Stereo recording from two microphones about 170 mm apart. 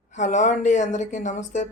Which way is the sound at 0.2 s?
45° left (ahead or behind).